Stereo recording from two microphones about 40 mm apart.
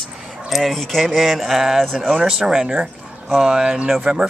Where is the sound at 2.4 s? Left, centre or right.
Centre.